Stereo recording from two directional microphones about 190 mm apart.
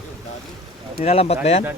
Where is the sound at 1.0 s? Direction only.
30° left (ahead or behind).